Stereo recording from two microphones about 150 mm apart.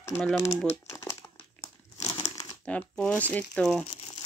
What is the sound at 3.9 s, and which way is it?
Crumpling, 40° left (ahead or behind).